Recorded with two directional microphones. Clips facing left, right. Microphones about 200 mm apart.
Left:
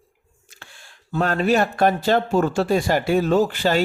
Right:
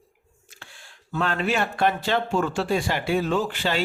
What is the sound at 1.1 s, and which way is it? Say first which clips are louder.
Speech: left 6 dB; 40° left (ahead or behind).